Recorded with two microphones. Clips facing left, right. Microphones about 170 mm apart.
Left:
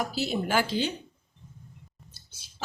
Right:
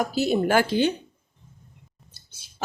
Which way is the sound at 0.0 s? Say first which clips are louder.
Right 7 dB; 50° right (ahead or behind).